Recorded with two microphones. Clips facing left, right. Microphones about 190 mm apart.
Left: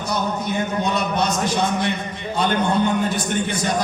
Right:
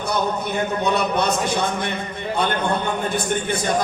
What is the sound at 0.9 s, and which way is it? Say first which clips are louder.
Speech: right 1 dB; 60° right (ahead or behind).